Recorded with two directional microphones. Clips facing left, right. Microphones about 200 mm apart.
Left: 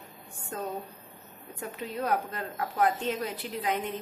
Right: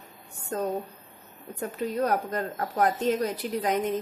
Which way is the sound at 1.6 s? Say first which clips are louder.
Right 6 dB; 40° right (ahead or behind).